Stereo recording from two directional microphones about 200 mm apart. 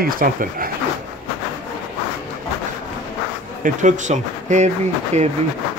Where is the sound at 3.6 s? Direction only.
40° right (ahead or behind).